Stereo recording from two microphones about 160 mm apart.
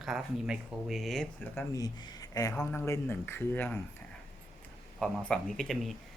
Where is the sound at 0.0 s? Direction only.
5° right (ahead or behind).